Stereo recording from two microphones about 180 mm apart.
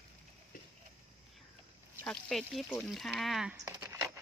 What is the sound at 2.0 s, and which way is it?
Speech, 5° left (ahead or behind).